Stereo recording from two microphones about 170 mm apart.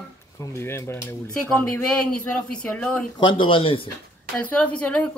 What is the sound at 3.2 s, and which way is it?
Speech, 30° left (ahead or behind).